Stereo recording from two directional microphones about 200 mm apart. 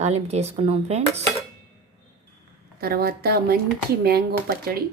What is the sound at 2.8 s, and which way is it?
A woman's voice, 50° right (ahead or behind).